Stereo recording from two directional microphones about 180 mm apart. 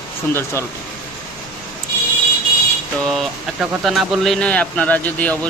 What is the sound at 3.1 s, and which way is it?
A man's voice, centre (ahead or behind).